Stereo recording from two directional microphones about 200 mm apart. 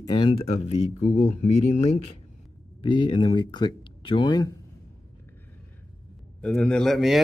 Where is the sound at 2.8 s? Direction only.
25° left (ahead or behind).